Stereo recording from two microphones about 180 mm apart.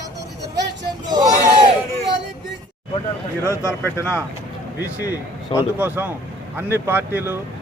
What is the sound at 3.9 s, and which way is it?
Speech, 15° left (ahead or behind).